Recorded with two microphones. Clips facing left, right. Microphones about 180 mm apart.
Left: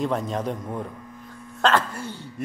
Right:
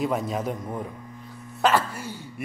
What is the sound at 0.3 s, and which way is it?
Speech, 5° right (ahead or behind).